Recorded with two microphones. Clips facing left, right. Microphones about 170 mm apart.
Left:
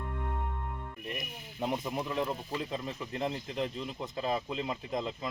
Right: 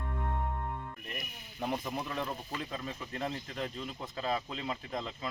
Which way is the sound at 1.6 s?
20° left (ahead or behind).